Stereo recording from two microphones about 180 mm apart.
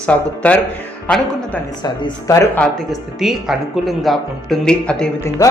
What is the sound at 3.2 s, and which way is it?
Speech, centre (ahead or behind).